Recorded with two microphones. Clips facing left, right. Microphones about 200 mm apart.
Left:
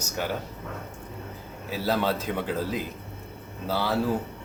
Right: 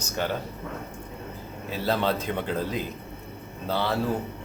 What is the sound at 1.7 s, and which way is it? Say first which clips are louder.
A man's voice: even; 5° left (ahead or behind).